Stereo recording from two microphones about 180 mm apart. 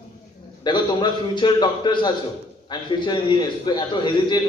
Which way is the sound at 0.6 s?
25° left (ahead or behind).